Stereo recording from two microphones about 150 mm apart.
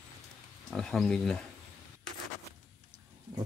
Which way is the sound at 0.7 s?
Centre (ahead or behind).